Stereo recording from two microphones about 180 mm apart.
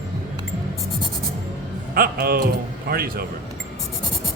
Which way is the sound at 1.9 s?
55° right (ahead or behind).